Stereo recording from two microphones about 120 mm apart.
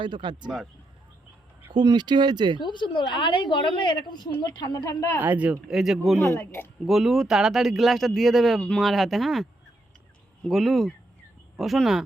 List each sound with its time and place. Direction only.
0.0 s speech: 40° right (ahead or behind)
1.7 s speech: 35° right (ahead or behind)
2.6 s a woman's voice: 40° left (ahead or behind)
4.8 s speech: 20° left (ahead or behind)
5.2 s speech: 10° right (ahead or behind)
6.1 s a man's voice: 15° left (ahead or behind)
6.8 s speech: centre (ahead or behind)